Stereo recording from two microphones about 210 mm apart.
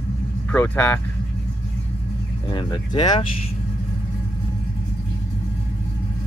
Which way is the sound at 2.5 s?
20° left (ahead or behind).